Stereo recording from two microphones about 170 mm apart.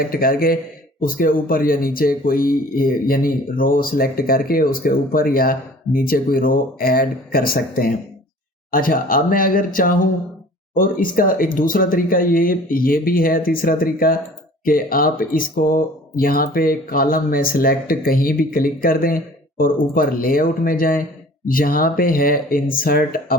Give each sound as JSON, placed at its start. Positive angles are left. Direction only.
{"t": 0.1, "sound": "a man's voice", "side_deg": 60}